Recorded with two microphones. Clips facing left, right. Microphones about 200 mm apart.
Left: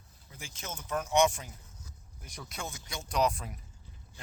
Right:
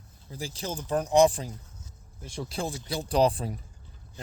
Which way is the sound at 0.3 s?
35° right (ahead or behind).